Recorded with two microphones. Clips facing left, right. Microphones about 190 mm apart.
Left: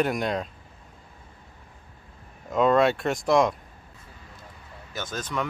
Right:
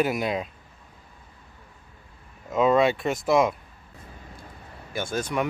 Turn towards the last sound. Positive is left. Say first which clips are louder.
# right 4 dB
turn(degrees=-10)  # may be behind; listen again after turning